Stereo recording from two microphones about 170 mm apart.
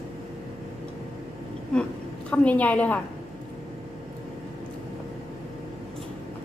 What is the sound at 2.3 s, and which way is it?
Speech, 10° left (ahead or behind).